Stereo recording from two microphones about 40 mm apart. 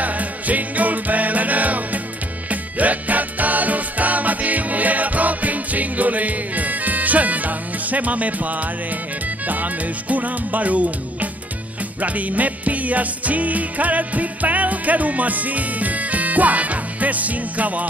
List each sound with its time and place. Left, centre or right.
0.0 s music: right